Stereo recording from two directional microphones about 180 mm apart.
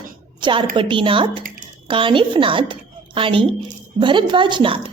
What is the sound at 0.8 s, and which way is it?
Speech, 30° right (ahead or behind).